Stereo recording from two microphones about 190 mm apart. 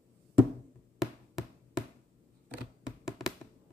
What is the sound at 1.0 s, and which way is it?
Hammer, 5° right (ahead or behind).